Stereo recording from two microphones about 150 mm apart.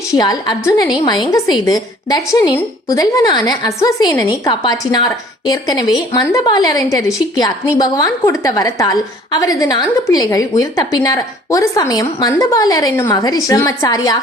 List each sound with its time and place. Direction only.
0.1 s a woman's voice: 25° left (ahead or behind)